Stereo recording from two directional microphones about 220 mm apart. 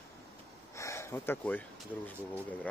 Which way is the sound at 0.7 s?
15° left (ahead or behind).